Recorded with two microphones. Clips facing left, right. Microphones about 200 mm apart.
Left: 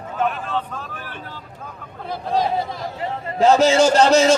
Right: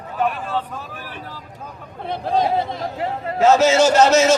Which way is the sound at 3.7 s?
5° right (ahead or behind).